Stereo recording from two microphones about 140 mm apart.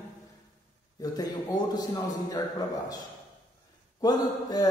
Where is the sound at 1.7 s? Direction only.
25° left (ahead or behind).